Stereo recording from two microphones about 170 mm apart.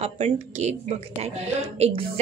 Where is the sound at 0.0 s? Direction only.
40° right (ahead or behind).